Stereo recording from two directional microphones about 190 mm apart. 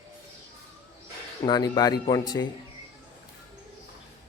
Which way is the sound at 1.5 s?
20° left (ahead or behind).